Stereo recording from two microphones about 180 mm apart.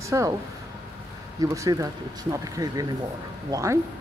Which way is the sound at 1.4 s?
20° right (ahead or behind).